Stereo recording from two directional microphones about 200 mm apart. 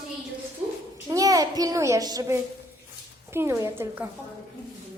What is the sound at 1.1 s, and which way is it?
A child's voice, 15° right (ahead or behind).